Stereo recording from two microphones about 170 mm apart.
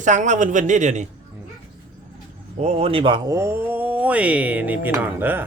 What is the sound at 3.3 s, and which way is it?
Speech, 15° right (ahead or behind).